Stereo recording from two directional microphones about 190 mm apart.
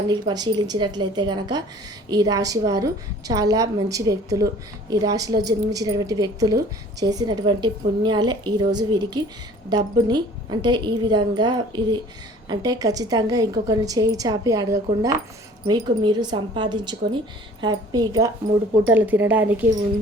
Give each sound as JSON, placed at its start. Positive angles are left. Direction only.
{"t": 0.1, "sound": "a woman's voice", "side_deg": -20}